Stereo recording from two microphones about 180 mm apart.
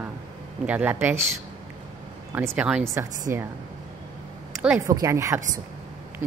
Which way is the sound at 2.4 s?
10° right (ahead or behind).